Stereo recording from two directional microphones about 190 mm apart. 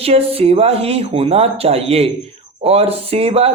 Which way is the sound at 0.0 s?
30° right (ahead or behind).